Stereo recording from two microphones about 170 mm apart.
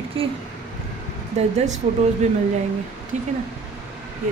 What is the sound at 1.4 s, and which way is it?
Speech, 40° right (ahead or behind).